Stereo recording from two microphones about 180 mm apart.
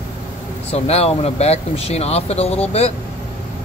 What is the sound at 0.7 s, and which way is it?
Speech, 35° left (ahead or behind).